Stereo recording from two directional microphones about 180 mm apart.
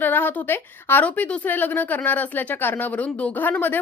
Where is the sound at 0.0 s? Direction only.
10° left (ahead or behind).